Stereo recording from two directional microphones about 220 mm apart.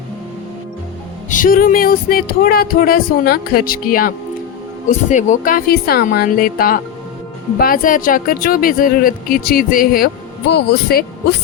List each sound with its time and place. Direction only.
1.3 s speech: 40° left (ahead or behind)